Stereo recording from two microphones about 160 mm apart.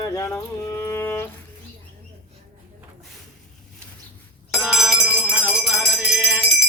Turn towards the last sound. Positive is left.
turn(degrees=-5)  # may be behind; listen again after turning